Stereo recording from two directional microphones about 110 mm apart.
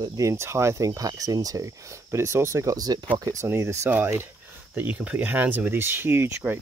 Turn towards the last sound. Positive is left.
turn(degrees=-20)  # may be behind; listen again after turning